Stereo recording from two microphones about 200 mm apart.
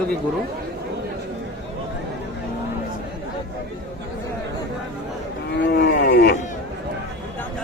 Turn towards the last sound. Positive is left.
turn(degrees=55)  # may be behind; listen again after turning